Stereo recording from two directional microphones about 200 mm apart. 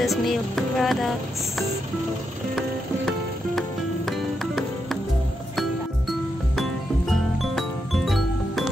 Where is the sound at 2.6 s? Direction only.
Centre (ahead or behind).